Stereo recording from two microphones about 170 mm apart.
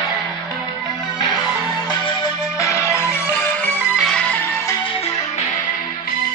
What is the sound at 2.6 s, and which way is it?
Music, 15° left (ahead or behind).